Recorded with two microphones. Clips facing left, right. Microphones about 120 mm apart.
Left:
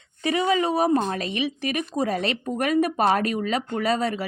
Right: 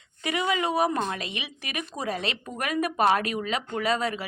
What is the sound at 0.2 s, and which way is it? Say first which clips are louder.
A woman's voice: left 5 dB; 35° left (ahead or behind).